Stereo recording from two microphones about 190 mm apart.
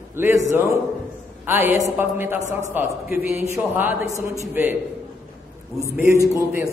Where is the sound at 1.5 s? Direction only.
10° right (ahead or behind).